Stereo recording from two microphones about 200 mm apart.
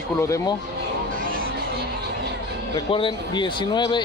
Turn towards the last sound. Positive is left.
turn(degrees=20)  # may be behind; listen again after turning